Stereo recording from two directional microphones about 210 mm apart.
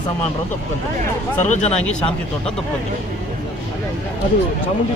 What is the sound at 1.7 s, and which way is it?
Speech, 5° left (ahead or behind).